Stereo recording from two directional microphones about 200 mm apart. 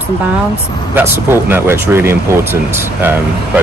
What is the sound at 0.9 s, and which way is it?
Speech, 10° right (ahead or behind).